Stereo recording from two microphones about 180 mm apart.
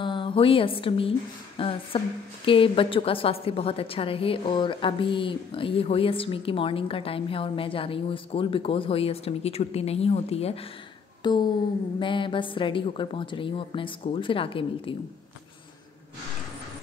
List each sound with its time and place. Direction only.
0.0 s a woman's voice: 25° left (ahead or behind)